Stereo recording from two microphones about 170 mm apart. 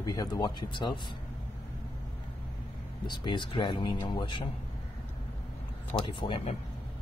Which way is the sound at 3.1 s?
25° left (ahead or behind).